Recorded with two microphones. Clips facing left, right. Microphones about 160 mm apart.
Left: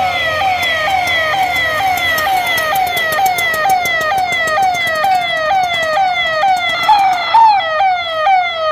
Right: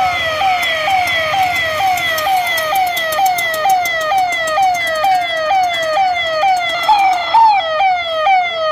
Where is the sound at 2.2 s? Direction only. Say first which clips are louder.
Even; 60° left (ahead or behind).